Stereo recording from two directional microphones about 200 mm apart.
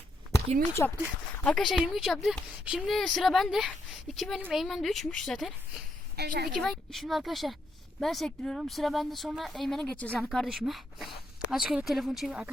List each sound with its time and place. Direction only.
0.8 s speech: 10° left (ahead or behind)
6.1 s a woman's voice: 55° right (ahead or behind)
6.5 s speech: centre (ahead or behind)